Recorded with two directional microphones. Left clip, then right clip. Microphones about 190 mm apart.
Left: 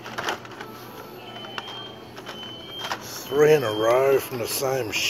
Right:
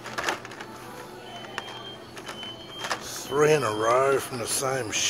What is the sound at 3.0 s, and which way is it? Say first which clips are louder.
Speech: left 4 dB; 20° right (ahead or behind).